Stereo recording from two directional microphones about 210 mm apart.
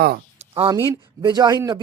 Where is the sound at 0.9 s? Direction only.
20° right (ahead or behind).